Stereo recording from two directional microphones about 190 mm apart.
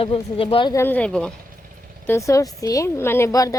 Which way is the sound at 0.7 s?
10° left (ahead or behind).